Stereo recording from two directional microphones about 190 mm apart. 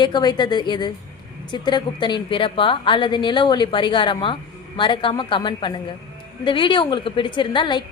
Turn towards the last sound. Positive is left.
turn(degrees=25)  # may be behind; listen again after turning